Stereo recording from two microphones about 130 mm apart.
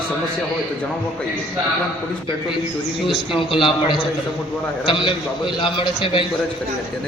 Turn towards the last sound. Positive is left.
turn(degrees=40)  # may be behind; listen again after turning